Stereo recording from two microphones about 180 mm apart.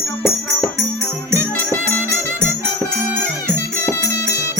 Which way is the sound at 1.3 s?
15° right (ahead or behind).